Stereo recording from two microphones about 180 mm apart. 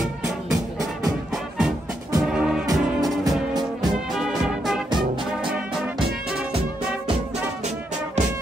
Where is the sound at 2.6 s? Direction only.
20° right (ahead or behind).